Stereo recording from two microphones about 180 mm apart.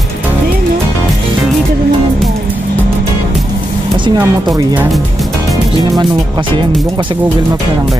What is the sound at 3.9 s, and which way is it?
Speech, 25° right (ahead or behind).